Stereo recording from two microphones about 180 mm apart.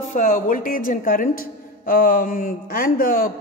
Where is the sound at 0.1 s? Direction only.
45° left (ahead or behind).